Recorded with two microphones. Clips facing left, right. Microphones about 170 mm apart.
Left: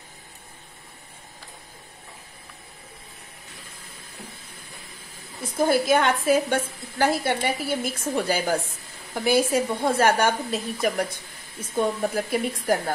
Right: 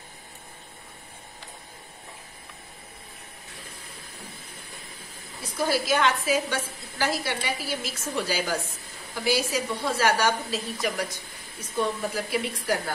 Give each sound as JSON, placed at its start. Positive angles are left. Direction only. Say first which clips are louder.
{"t": 5.4, "sound": "a woman's voice", "louder": "left 5 dB", "side_deg": 50}